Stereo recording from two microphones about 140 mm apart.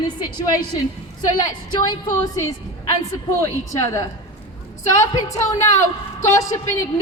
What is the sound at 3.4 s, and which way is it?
A woman's voice, 20° left (ahead or behind).